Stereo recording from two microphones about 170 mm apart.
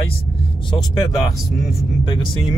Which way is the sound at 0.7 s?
20° left (ahead or behind).